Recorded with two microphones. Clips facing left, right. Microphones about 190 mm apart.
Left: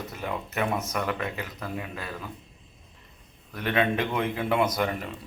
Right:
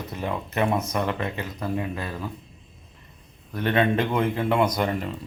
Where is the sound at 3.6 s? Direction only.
5° left (ahead or behind).